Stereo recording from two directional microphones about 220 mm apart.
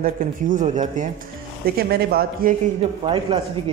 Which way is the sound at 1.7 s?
45° right (ahead or behind).